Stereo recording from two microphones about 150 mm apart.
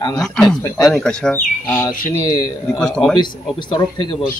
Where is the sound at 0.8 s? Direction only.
5° left (ahead or behind).